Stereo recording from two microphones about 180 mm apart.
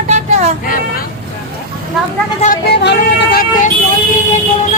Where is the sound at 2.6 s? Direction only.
70° left (ahead or behind).